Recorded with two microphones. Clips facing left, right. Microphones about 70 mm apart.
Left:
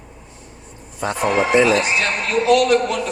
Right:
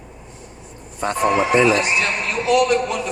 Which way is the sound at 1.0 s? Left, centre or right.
Right.